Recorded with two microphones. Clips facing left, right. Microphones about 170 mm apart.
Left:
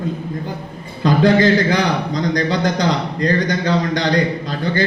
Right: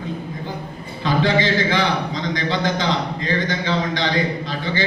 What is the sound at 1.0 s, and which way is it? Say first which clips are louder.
A man's voice: left 6 dB; 45° left (ahead or behind).